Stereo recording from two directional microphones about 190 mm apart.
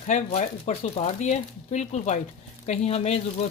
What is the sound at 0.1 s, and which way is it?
Speech, 35° left (ahead or behind).